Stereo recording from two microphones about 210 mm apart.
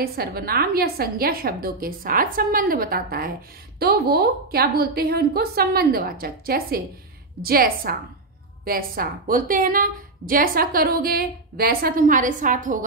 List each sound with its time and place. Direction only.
0.0 s a woman's voice: 45° right (ahead or behind)